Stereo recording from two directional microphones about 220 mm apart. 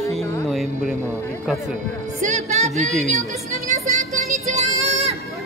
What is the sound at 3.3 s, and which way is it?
Music, 35° right (ahead or behind).